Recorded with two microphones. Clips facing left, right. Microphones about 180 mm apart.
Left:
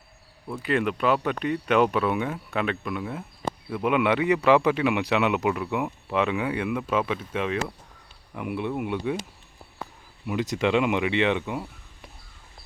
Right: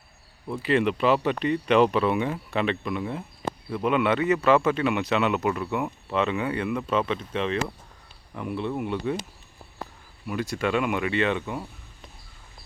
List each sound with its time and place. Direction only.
0.7 s speech: centre (ahead or behind)
10.2 s speech: 20° left (ahead or behind)